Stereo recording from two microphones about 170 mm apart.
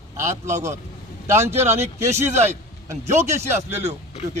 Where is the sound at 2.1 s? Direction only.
40° right (ahead or behind).